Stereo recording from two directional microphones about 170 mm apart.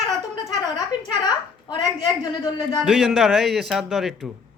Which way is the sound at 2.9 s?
Centre (ahead or behind).